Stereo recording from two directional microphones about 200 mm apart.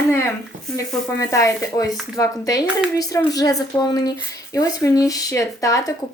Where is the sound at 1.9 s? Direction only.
Centre (ahead or behind).